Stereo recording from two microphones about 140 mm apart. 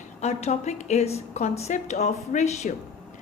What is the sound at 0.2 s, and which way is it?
A woman's voice, 50° left (ahead or behind).